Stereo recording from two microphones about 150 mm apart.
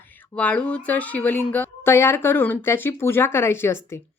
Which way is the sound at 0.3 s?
10° left (ahead or behind).